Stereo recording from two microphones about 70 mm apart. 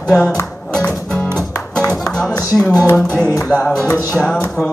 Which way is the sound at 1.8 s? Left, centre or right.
Centre.